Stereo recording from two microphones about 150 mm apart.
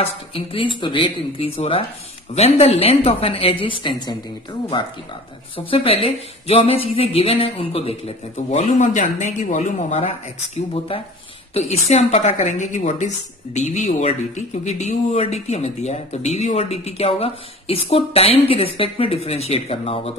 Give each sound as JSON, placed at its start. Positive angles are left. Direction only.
{"t": 0.0, "sound": "a woman's voice", "side_deg": 35}
{"t": 5.7, "sound": "a woman's voice", "side_deg": 40}
{"t": 8.5, "sound": "a woman's voice", "side_deg": 55}